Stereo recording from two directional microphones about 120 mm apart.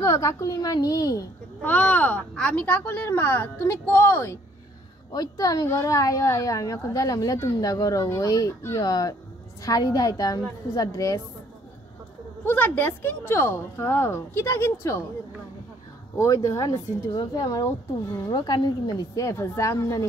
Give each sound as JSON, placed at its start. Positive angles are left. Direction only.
{"t": 0.0, "sound": "a woman's voice", "side_deg": 25}
{"t": 1.6, "sound": "speech", "side_deg": 15}
{"t": 5.1, "sound": "a woman's voice", "side_deg": 30}
{"t": 12.4, "sound": "a woman's voice", "side_deg": 15}
{"t": 16.2, "sound": "a woman's voice", "side_deg": 25}